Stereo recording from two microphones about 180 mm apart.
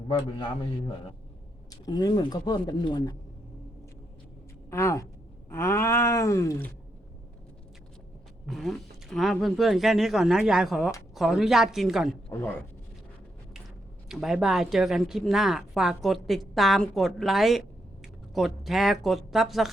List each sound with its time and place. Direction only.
0.1 s speech: 25° left (ahead or behind)
4.7 s groan: 15° left (ahead or behind)
8.4 s speech: centre (ahead or behind)
12.3 s groan: 10° left (ahead or behind)
14.1 s speech: 5° right (ahead or behind)